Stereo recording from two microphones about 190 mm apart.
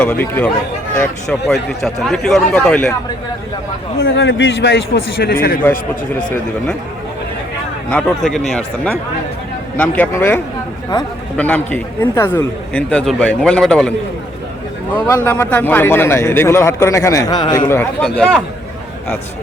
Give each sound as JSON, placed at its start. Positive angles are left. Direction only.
{"t": 0.0, "sound": "a man's voice", "side_deg": 10}
{"t": 4.0, "sound": "a man's voice", "side_deg": 70}
{"t": 7.9, "sound": "a man's voice", "side_deg": 5}
{"t": 9.7, "sound": "a man's voice", "side_deg": 10}
{"t": 14.9, "sound": "a man's voice", "side_deg": 10}
{"t": 18.0, "sound": "speech", "side_deg": 5}